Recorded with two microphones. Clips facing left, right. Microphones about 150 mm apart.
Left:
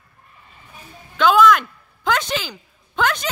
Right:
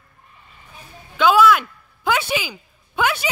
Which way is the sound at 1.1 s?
10° right (ahead or behind).